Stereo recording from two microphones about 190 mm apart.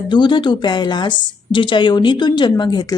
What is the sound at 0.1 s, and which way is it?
Speech, 25° left (ahead or behind).